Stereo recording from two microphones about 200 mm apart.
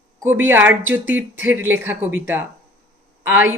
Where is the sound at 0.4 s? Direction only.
10° right (ahead or behind).